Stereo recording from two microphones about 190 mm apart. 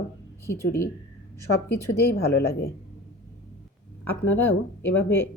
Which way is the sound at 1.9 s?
55° left (ahead or behind).